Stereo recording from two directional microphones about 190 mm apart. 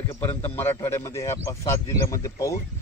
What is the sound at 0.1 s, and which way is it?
A man's voice, 10° left (ahead or behind).